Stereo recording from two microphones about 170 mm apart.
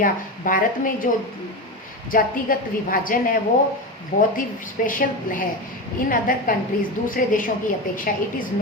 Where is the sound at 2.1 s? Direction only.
55° left (ahead or behind).